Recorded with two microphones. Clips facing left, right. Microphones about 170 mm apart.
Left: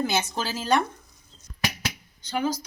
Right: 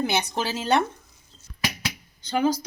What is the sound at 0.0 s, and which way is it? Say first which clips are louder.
Speech: right 1 dB; 20° right (ahead or behind).